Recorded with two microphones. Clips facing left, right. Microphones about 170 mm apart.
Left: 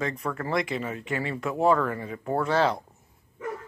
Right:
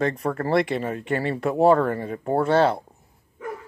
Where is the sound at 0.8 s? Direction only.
50° right (ahead or behind).